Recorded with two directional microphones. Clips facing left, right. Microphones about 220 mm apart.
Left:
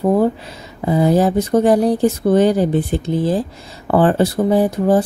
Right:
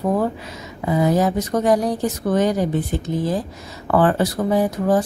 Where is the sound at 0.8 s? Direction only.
30° left (ahead or behind).